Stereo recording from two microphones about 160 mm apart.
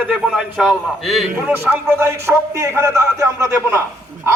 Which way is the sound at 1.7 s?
15° right (ahead or behind).